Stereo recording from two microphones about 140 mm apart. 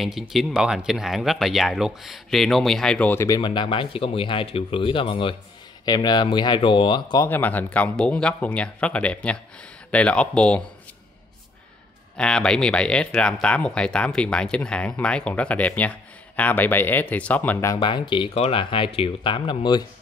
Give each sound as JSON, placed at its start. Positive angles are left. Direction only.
{"t": 0.0, "sound": "speech", "side_deg": 0}
{"t": 3.3, "sound": "speech", "side_deg": 30}
{"t": 7.2, "sound": "speech", "side_deg": 15}
{"t": 12.2, "sound": "speech", "side_deg": 5}
{"t": 17.7, "sound": "speech", "side_deg": 35}